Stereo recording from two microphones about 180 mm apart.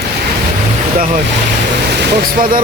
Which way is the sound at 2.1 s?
50° right (ahead or behind).